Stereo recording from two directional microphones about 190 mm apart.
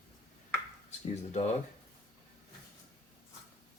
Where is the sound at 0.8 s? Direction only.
35° left (ahead or behind).